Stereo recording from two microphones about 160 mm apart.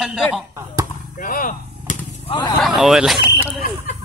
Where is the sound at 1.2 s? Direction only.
60° left (ahead or behind).